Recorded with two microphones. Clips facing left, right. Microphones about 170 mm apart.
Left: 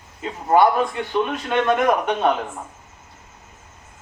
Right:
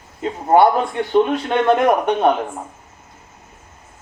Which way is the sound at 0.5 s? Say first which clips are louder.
Right 3 dB; 30° right (ahead or behind).